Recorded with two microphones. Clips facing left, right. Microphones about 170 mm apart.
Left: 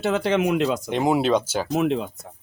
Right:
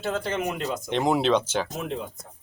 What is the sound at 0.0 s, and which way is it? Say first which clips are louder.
Speech: left 6 dB; 80° left.